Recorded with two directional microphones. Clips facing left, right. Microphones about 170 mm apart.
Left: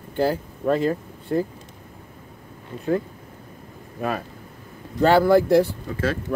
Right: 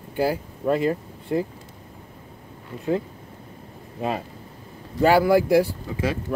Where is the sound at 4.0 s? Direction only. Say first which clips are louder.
Even; 20° right (ahead or behind).